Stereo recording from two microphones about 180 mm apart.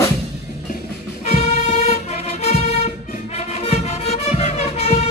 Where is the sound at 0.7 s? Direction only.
40° left (ahead or behind).